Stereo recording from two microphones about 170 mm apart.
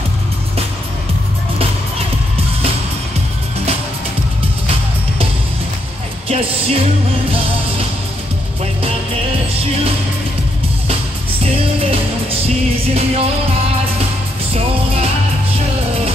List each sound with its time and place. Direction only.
6.2 s music: 35° right (ahead or behind)
11.5 s music: 35° right (ahead or behind)